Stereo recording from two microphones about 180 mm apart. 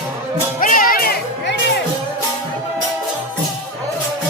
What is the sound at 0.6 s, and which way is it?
Music, 50° left (ahead or behind).